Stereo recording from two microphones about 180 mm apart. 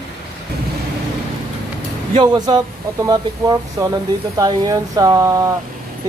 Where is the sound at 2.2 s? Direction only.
20° right (ahead or behind).